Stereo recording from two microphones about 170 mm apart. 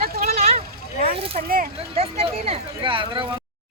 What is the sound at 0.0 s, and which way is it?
Vehicle, 65° right (ahead or behind).